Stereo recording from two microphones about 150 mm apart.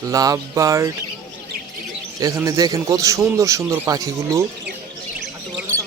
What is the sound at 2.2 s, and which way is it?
A man's voice, 20° right (ahead or behind).